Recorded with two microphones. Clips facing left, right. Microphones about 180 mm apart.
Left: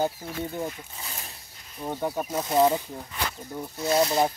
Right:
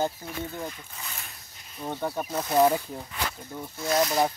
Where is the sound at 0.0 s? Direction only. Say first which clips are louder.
Left 2 dB; 15° left (ahead or behind).